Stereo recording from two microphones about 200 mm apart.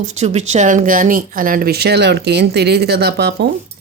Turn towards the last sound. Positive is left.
turn(degrees=-50)  # may be behind; listen again after turning